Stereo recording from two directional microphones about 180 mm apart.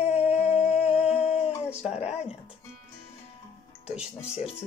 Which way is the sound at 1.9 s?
35° left (ahead or behind).